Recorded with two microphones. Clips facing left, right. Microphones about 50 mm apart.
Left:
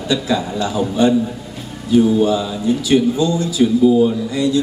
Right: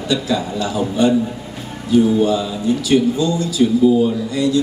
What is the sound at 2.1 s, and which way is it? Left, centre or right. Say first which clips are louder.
A man's voice: left 1 dB; left.